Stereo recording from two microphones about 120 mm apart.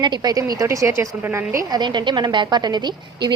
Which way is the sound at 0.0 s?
35° right (ahead or behind).